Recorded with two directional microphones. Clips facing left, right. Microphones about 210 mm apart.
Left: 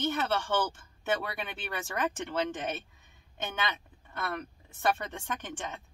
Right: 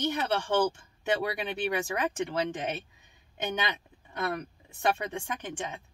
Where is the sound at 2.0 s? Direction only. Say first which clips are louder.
Right 2 dB; 10° right (ahead or behind).